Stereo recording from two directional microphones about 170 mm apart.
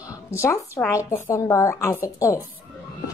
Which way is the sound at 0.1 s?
15° left (ahead or behind).